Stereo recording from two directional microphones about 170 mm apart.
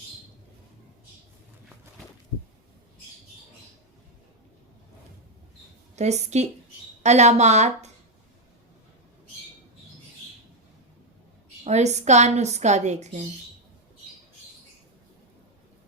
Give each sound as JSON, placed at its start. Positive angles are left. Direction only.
{"t": 6.0, "sound": "a woman's voice", "side_deg": -40}
{"t": 11.6, "sound": "a woman's voice", "side_deg": -40}